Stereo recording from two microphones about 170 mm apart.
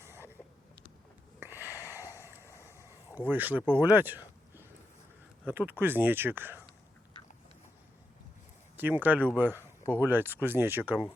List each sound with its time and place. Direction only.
0.0 s a sound: 15° right (ahead or behind)
1.4 s wheeze: 10° right (ahead or behind)
2.1 s vehicle: 15° right (ahead or behind)
2.5 s a sound: 15° left (ahead or behind)
3.2 s speech: 10° right (ahead or behind)
8.7 s speech: 10° right (ahead or behind)